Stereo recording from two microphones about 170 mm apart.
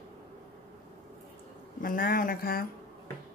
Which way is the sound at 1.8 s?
55° left (ahead or behind).